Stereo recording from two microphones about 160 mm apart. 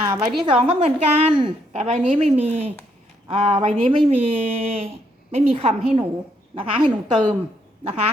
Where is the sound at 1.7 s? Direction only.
45° right (ahead or behind).